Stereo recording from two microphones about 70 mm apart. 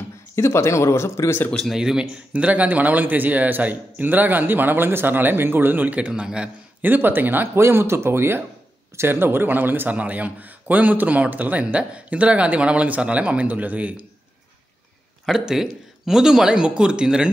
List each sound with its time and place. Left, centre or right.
0.4 s speech: left
1.7 s speech: centre
2.3 s a man's voice: centre
6.8 s a man's voice: right
15.2 s speech: centre